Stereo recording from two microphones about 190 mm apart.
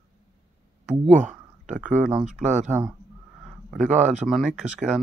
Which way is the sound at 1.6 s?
5° right (ahead or behind).